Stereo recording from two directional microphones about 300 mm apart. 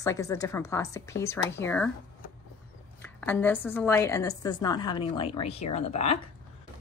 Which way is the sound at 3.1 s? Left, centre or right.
Centre.